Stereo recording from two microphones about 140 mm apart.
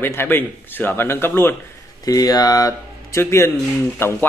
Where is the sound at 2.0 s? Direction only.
25° left (ahead or behind).